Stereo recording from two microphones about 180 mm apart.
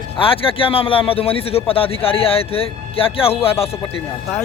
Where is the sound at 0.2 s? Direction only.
30° left (ahead or behind).